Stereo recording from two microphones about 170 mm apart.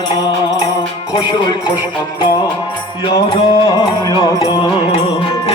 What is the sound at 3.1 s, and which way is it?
Music, 30° left (ahead or behind).